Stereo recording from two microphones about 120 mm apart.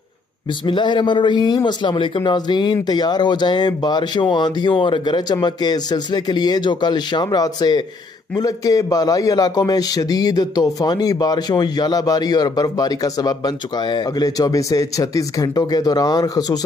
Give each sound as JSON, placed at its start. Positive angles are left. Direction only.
{"t": 0.7, "sound": "a man's voice", "side_deg": 40}